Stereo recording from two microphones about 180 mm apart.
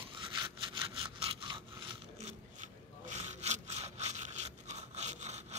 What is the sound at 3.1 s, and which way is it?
Sawing, 40° right (ahead or behind).